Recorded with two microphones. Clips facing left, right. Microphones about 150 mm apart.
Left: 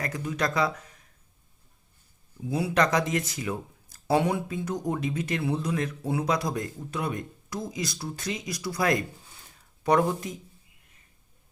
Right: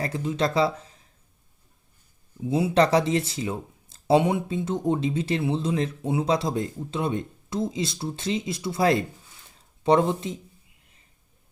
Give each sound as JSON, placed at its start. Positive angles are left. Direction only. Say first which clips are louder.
{"t": 0.0, "sound": "speech", "louder": "right 4 dB", "side_deg": -25}
{"t": 2.4, "sound": "speech", "louder": "right 4 dB", "side_deg": -20}